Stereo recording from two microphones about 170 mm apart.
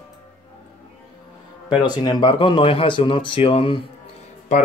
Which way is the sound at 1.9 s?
25° left (ahead or behind).